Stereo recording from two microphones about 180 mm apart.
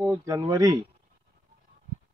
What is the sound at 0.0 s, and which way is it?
Speech, 15° right (ahead or behind).